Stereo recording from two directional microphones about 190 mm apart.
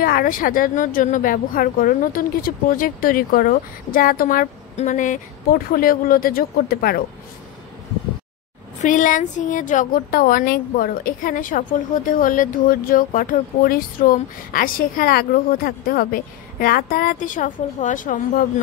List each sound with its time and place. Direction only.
0.0 s a woman's voice: 50° left (ahead or behind)
8.8 s a woman's voice: 45° left (ahead or behind)